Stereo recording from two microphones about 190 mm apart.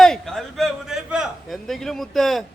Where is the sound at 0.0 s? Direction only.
Centre (ahead or behind).